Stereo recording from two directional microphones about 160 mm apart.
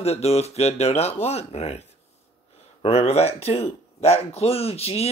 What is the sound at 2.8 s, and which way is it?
Speech, 40° left (ahead or behind).